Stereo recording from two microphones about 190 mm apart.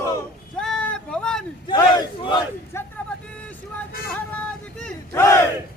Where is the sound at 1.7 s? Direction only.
20° left (ahead or behind).